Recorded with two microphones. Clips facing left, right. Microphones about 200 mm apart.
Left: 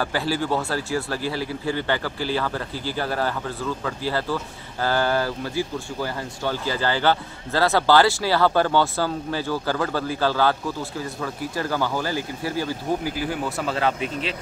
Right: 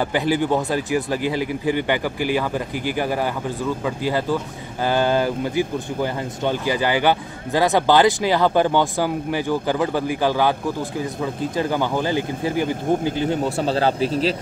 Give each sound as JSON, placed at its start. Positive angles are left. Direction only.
{"t": 0.0, "sound": "speech", "side_deg": -20}